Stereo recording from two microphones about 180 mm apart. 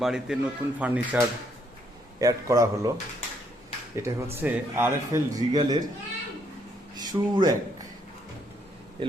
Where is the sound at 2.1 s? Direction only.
20° right (ahead or behind).